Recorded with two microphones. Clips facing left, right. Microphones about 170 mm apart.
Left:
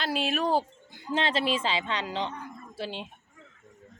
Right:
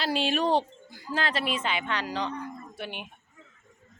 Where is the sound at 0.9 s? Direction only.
20° left (ahead or behind).